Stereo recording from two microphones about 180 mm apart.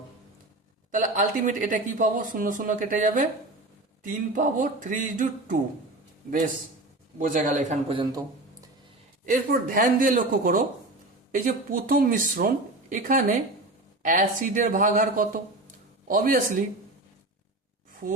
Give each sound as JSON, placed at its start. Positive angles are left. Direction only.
{"t": 0.9, "sound": "speech", "side_deg": -45}
{"t": 7.2, "sound": "speech", "side_deg": -45}
{"t": 9.2, "sound": "speech", "side_deg": -45}